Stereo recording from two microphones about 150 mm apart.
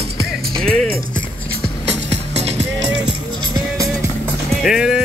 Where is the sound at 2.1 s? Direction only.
45° right (ahead or behind).